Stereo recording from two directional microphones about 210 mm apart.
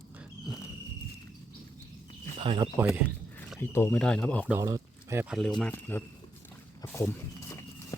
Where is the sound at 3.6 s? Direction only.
10° left (ahead or behind).